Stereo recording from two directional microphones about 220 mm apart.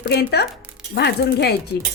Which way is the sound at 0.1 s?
45° left (ahead or behind).